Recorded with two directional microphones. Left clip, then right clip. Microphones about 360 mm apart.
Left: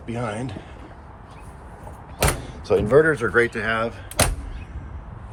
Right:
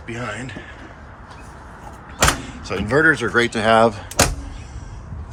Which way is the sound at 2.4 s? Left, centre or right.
Centre.